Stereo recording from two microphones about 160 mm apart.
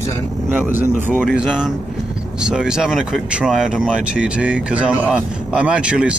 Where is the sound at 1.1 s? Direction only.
5° left (ahead or behind).